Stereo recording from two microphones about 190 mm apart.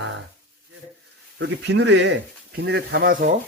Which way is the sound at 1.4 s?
65° right (ahead or behind).